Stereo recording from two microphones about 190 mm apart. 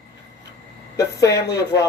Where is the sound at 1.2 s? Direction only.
65° left (ahead or behind).